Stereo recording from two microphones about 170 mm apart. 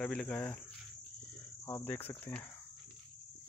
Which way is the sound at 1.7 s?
15° left (ahead or behind).